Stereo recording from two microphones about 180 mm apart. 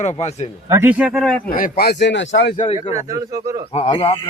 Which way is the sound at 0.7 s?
10° right (ahead or behind).